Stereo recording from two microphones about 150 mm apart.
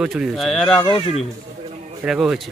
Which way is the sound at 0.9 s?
40° left (ahead or behind).